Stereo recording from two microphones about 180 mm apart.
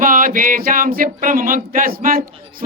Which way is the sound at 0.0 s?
50° right (ahead or behind).